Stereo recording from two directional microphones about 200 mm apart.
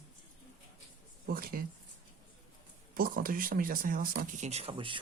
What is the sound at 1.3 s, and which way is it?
Speech, 45° right (ahead or behind).